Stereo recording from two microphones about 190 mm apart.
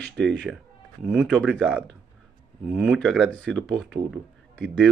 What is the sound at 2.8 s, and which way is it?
Speech, centre (ahead or behind).